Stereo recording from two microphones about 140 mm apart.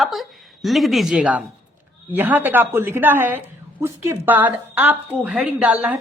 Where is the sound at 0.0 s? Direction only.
Centre (ahead or behind).